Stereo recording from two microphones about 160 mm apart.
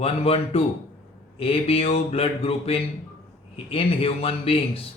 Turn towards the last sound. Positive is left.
turn(degrees=35)  # may be behind; listen again after turning